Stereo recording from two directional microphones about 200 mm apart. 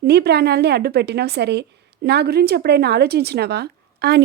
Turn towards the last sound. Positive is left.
turn(degrees=-55)  # may be behind; listen again after turning